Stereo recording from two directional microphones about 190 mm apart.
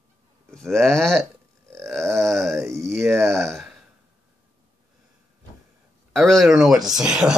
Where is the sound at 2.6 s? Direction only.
15° right (ahead or behind).